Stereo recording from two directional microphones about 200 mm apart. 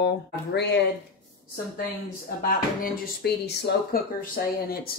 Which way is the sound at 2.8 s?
55° left (ahead or behind).